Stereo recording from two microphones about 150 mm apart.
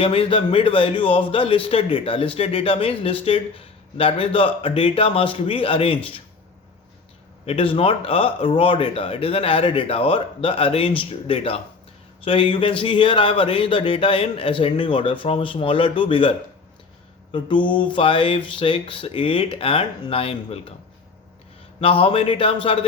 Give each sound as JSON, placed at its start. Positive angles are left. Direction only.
{"t": 0.0, "sound": "speech", "side_deg": 40}
{"t": 7.4, "sound": "speech", "side_deg": 35}
{"t": 17.3, "sound": "speech", "side_deg": 30}
{"t": 21.8, "sound": "speech", "side_deg": 35}